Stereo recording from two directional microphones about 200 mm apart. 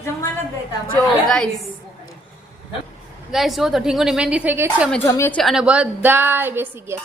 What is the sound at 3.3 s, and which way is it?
A woman's voice, centre (ahead or behind).